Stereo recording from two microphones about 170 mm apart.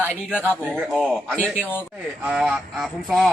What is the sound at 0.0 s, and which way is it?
A man's voice, 10° left (ahead or behind).